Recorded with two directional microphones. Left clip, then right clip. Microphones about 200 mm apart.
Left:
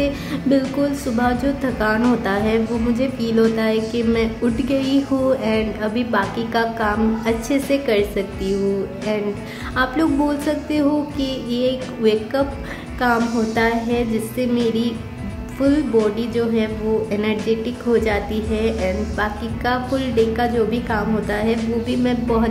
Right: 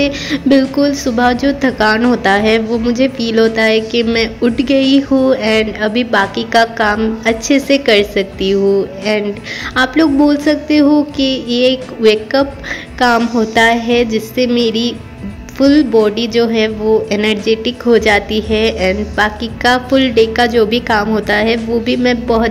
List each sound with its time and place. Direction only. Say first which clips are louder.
0.0 s a woman's voice: right 7 dB; 25° right (ahead or behind)
9.8 s a woman's voice: right 7 dB; 15° right (ahead or behind)